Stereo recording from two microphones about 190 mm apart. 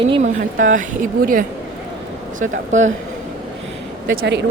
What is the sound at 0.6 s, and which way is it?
Speech, 45° right (ahead or behind).